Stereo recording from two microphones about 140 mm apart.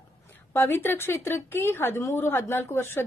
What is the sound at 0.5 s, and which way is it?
A woman's voice, 15° left (ahead or behind).